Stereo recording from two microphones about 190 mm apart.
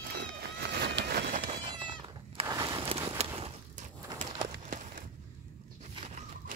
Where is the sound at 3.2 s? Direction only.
35° right (ahead or behind).